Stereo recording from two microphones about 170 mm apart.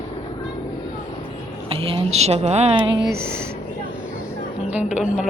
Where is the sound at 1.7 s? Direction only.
35° right (ahead or behind).